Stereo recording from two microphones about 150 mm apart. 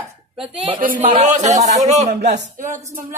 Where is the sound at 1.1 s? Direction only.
50° right (ahead or behind).